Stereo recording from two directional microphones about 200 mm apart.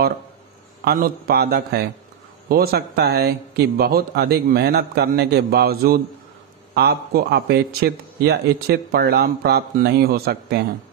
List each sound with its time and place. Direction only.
0.8 s a man's voice: 50° right (ahead or behind)